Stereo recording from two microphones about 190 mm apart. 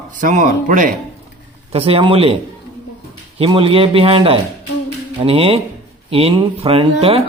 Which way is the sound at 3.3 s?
30° right (ahead or behind).